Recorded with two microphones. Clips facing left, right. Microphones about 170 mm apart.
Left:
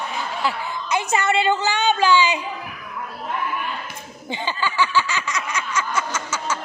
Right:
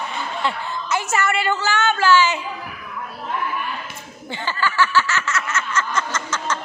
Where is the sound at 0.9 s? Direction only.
15° left (ahead or behind).